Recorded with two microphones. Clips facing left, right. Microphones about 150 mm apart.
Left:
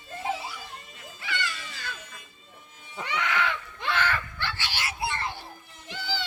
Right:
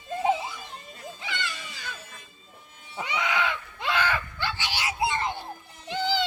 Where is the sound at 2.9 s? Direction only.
15° right (ahead or behind).